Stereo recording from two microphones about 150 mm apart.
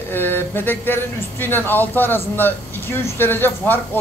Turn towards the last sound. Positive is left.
turn(degrees=15)  # may be behind; listen again after turning